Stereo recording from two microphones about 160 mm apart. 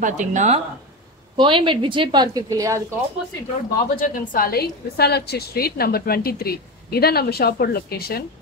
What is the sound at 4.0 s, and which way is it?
A woman's voice, 60° left (ahead or behind).